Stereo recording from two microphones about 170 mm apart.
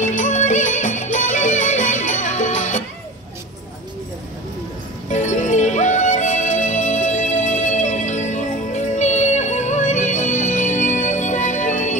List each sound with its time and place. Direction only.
0.0 s music: 45° left (ahead or behind)
5.1 s music: 45° left (ahead or behind)